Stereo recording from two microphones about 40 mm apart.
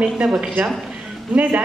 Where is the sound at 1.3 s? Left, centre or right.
Right.